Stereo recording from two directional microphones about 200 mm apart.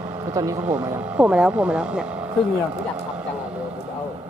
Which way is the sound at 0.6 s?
5° right (ahead or behind).